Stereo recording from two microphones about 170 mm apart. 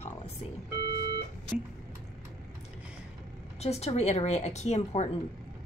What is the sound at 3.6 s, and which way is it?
A woman's voice, 40° left (ahead or behind).